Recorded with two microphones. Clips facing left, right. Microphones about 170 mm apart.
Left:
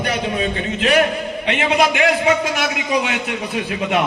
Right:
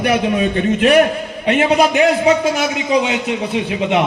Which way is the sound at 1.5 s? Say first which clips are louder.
Right 4 dB; 40° right (ahead or behind).